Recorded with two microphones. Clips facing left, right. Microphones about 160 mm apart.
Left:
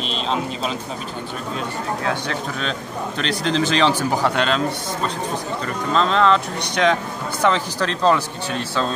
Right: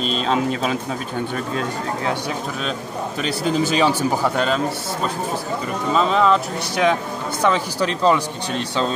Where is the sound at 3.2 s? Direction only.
10° right (ahead or behind).